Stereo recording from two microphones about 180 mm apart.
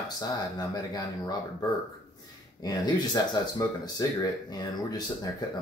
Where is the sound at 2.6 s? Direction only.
20° left (ahead or behind).